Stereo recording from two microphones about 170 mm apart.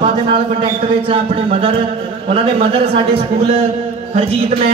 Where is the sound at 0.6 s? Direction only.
35° right (ahead or behind).